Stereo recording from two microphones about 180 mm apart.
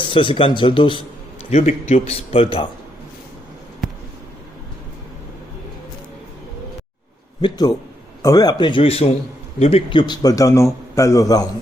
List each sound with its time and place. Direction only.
0.0 s a man's voice: 25° left (ahead or behind)
1.5 s a man's voice: 40° left (ahead or behind)
7.4 s a man's voice: 20° left (ahead or behind)